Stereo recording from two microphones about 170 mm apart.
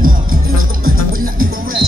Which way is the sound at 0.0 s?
55° right (ahead or behind).